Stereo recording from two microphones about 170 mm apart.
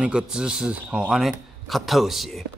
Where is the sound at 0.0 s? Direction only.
5° right (ahead or behind).